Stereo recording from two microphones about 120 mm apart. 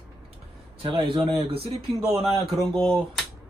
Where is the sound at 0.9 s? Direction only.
45° right (ahead or behind).